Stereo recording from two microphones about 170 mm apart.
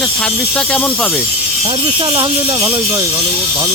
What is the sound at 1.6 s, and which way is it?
Speech, 35° right (ahead or behind).